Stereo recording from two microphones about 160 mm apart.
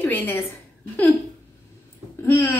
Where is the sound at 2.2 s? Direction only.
15° left (ahead or behind).